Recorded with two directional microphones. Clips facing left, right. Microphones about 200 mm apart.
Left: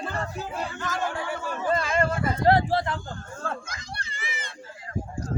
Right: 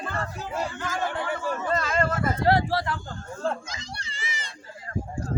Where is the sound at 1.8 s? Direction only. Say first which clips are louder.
Even; 15° left (ahead or behind).